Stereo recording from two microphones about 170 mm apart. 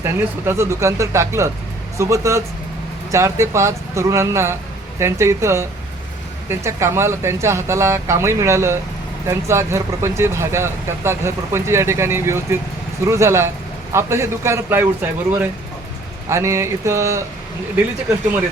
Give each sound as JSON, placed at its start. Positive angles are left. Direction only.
{"t": 0.0, "sound": "speech", "side_deg": -15}
{"t": 16.3, "sound": "speech", "side_deg": -15}